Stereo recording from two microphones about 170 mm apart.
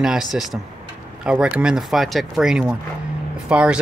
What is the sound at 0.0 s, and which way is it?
A man's voice, centre (ahead or behind).